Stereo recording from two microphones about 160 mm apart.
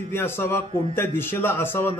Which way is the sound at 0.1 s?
15° left (ahead or behind).